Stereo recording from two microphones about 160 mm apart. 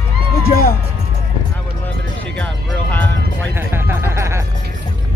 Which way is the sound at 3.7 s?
15° right (ahead or behind).